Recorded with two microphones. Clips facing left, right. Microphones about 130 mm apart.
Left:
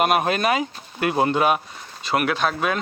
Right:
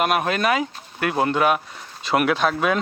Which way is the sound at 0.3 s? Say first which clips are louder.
Even; 50° right (ahead or behind).